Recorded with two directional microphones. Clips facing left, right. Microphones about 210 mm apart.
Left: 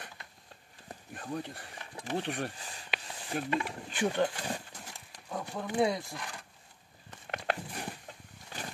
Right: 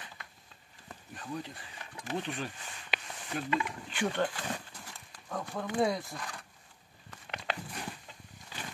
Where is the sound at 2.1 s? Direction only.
70° left (ahead or behind).